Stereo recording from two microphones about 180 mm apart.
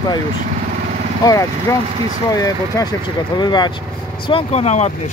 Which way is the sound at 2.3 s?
20° left (ahead or behind).